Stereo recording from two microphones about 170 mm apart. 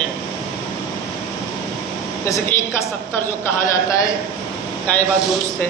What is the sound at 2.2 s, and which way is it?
A man's voice, 15° left (ahead or behind).